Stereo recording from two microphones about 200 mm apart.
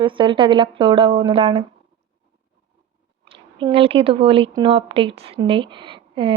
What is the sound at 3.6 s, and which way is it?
A woman's voice, 30° right (ahead or behind).